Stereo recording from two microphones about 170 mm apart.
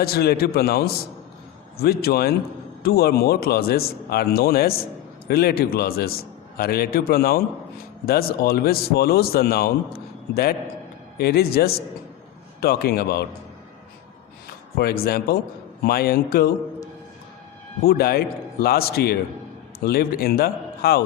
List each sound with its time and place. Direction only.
0.0 s a man's voice: 65° left (ahead or behind)
14.8 s a man's voice: 65° left (ahead or behind)
17.8 s a man's voice: 65° left (ahead or behind)